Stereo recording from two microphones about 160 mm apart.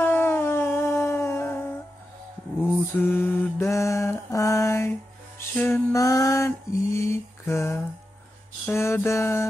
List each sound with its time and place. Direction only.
0.0 s music: 15° left (ahead or behind)
3.0 s mantra: 15° left (ahead or behind)
5.4 s music: 15° left (ahead or behind)
5.9 s a sound: 20° left (ahead or behind)
8.6 s mantra: 15° left (ahead or behind)